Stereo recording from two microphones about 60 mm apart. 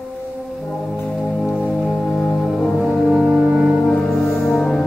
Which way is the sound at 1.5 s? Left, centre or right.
Centre.